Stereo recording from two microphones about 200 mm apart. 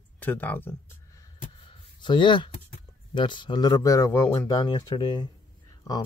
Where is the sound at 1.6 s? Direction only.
25° left (ahead or behind).